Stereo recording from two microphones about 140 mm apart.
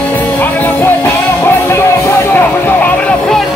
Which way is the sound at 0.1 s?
15° left (ahead or behind).